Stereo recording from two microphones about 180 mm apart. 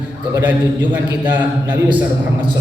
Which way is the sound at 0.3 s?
10° right (ahead or behind).